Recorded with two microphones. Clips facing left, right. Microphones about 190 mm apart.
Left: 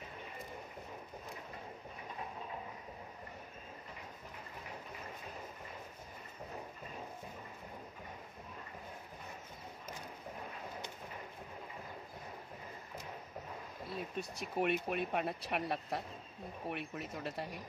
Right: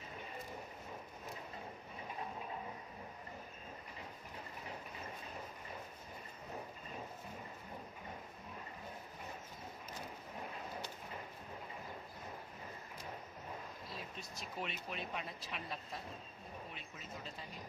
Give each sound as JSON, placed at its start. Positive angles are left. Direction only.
{"t": 13.8, "sound": "speech", "side_deg": 55}